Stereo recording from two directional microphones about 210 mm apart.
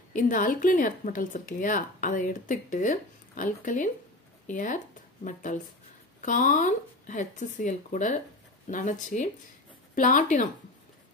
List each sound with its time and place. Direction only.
0.1 s speech: 40° left (ahead or behind)